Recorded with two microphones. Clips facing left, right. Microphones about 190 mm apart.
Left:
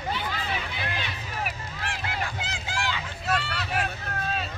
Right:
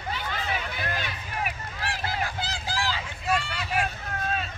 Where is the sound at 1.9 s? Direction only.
35° right (ahead or behind).